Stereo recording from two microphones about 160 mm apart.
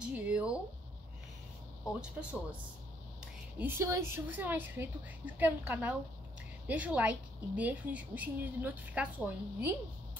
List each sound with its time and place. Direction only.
0.0 s a sound: 10° right (ahead or behind)
2.0 s a woman's voice: 5° right (ahead or behind)
3.5 s a woman's voice: 15° right (ahead or behind)